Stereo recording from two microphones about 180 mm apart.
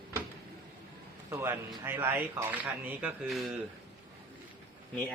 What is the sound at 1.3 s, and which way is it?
Speech, 15° right (ahead or behind).